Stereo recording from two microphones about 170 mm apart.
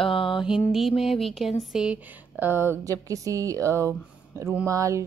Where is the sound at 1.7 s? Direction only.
5° right (ahead or behind).